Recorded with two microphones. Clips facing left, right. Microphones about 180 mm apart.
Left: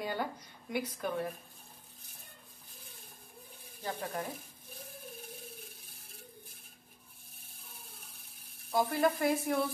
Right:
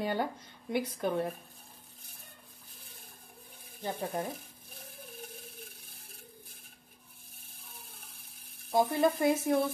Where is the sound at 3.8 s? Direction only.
25° right (ahead or behind).